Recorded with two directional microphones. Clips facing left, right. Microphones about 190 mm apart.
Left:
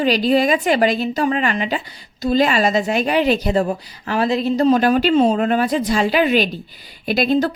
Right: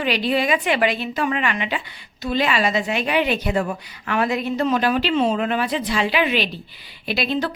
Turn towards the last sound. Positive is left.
turn(degrees=45)  # may be behind; listen again after turning